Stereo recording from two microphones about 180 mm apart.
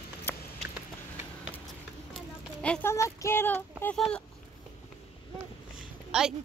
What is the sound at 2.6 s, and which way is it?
Speech, 10° left (ahead or behind).